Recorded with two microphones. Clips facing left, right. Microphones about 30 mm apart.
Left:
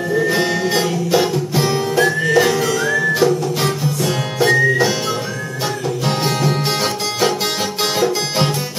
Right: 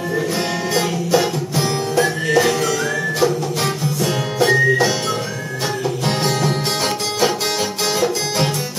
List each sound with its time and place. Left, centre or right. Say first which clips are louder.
0.3 s music: left 3 dB; centre
6.0 s music: left 1 dB; centre